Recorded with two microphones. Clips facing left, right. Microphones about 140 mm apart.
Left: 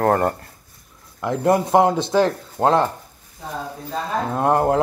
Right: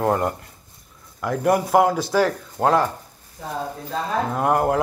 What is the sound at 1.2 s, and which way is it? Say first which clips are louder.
Speech: left 2 dB; 25° left (ahead or behind).